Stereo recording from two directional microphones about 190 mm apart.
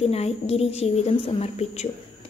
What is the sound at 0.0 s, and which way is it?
A woman's voice, 35° left (ahead or behind).